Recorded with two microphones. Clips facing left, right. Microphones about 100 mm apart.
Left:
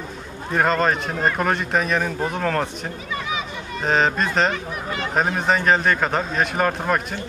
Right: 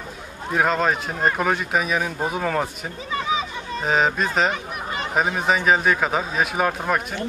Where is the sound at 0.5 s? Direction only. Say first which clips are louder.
Left 1 dB; 5° right (ahead or behind).